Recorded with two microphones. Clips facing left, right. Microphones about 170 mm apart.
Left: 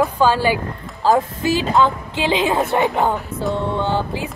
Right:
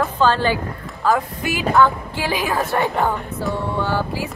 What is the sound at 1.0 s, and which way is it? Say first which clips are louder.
A woman's voice: left 3 dB; 25° left (ahead or behind).